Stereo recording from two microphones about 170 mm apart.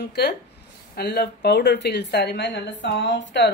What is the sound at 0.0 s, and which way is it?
A woman's voice, 75° left (ahead or behind).